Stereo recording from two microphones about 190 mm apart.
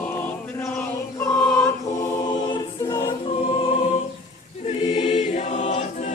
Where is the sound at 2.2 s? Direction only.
20° left (ahead or behind).